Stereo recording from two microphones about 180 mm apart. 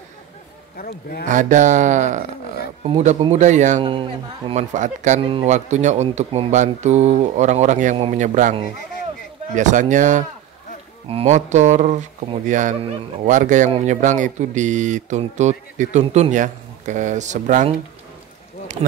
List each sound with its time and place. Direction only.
0.7 s a man's voice: 60° left (ahead or behind)
1.2 s speech: 45° right (ahead or behind)
3.8 s speech: 30° right (ahead or behind)
4.7 s speech: 40° right (ahead or behind)
5.2 s speech: 30° right (ahead or behind)
9.6 s speech: 45° right (ahead or behind)
18.8 s speech: 30° right (ahead or behind)